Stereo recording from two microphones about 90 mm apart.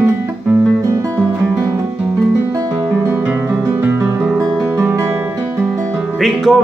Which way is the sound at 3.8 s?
15° right (ahead or behind).